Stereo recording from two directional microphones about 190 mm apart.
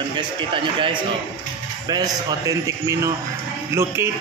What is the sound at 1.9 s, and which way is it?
Speech, 20° right (ahead or behind).